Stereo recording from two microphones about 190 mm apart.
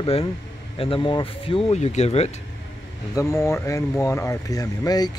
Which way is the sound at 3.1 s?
15° left (ahead or behind).